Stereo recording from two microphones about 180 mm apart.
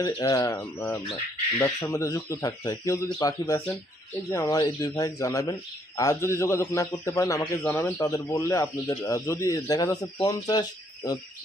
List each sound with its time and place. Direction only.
0.0 s speech: 20° left (ahead or behind)
7.9 s speech: 20° left (ahead or behind)